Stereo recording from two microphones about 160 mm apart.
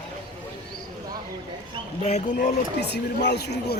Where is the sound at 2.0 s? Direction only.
50° left (ahead or behind).